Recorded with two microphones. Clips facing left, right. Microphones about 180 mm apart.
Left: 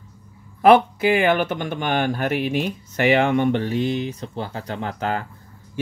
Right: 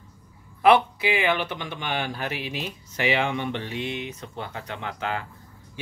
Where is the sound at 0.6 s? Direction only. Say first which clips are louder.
Left 5 dB; 45° left (ahead or behind).